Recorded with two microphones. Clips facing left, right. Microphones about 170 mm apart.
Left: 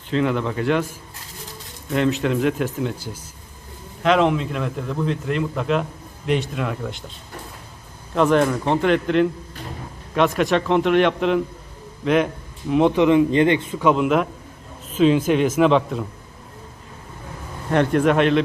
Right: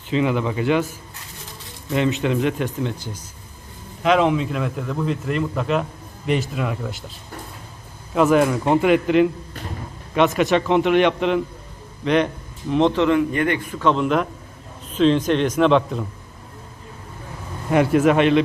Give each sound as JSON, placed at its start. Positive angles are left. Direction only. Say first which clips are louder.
{"t": 0.1, "sound": "a man's voice", "louder": "right 1 dB", "side_deg": -5}
{"t": 8.1, "sound": "a man's voice", "louder": "right 1 dB", "side_deg": -5}
{"t": 13.8, "sound": "a man's voice", "louder": "left 1 dB", "side_deg": 5}
{"t": 17.7, "sound": "a man's voice", "louder": "right 1 dB", "side_deg": -5}